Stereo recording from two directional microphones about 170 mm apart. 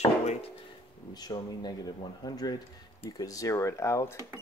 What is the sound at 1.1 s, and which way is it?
Speech, 25° left (ahead or behind).